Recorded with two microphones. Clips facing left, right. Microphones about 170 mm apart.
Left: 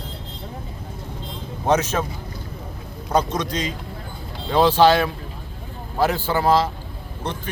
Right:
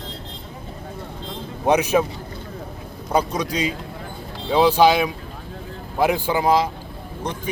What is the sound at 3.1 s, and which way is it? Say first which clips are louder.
Speech: even; 10° right (ahead or behind).